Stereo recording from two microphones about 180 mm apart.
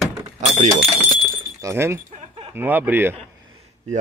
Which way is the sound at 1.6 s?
15° right (ahead or behind).